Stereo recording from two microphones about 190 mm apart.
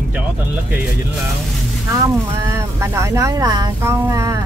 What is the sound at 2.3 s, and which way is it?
Speech, 15° right (ahead or behind).